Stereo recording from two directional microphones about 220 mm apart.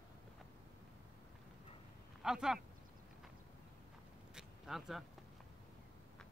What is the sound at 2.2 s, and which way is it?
Speech, 5° right (ahead or behind).